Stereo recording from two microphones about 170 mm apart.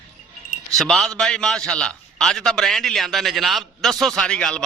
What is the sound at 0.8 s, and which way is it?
A man's voice, centre (ahead or behind).